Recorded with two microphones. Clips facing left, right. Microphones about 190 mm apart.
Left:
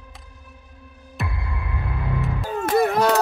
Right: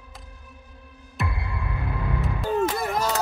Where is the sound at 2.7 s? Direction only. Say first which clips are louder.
Left 8 dB; 60° left (ahead or behind).